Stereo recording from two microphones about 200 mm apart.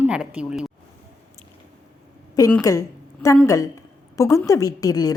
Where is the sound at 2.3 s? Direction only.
15° left (ahead or behind).